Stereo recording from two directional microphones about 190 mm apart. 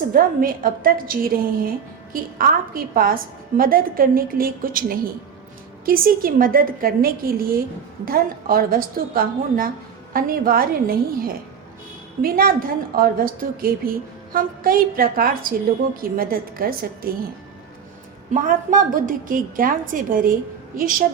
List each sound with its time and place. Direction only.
0.1 s a woman's voice: 50° right (ahead or behind)
18.3 s a woman's voice: 45° right (ahead or behind)